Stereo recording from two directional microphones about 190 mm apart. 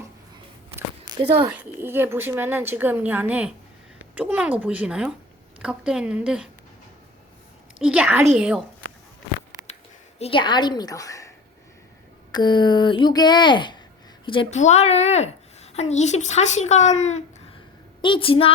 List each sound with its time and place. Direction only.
1.8 s a woman's voice: 10° right (ahead or behind)
7.8 s a woman's voice: 5° right (ahead or behind)
10.2 s speech: 30° left (ahead or behind)
12.3 s a woman's voice: 25° left (ahead or behind)